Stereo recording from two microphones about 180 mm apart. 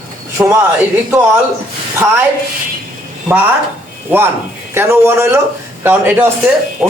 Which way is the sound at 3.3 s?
10° right (ahead or behind).